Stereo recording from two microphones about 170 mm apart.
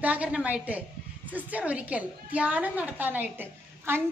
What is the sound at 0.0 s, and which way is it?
A woman's voice, 10° right (ahead or behind).